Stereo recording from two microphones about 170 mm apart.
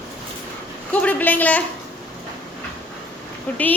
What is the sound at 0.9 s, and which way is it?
Speech, 10° left (ahead or behind).